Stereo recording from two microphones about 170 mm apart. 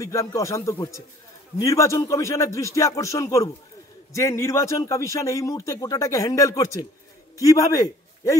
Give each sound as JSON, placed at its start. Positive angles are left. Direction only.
{"t": 0.0, "sound": "a man's voice", "side_deg": 20}